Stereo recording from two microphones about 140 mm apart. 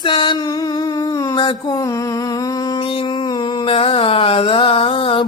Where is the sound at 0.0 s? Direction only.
35° left (ahead or behind).